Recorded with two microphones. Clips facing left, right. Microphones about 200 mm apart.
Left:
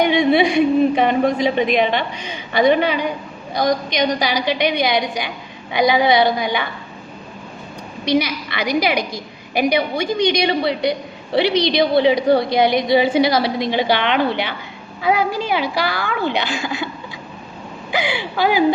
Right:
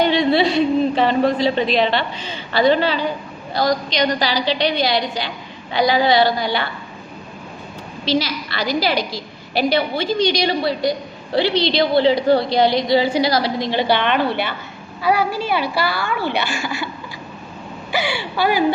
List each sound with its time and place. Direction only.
0.0 s a woman's voice: 15° left (ahead or behind)
8.0 s a woman's voice: 20° left (ahead or behind)
17.9 s a woman's voice: 15° left (ahead or behind)